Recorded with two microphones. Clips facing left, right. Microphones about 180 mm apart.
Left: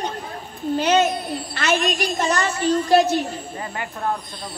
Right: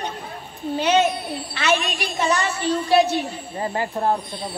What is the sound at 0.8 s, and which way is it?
A woman's voice, 45° left (ahead or behind).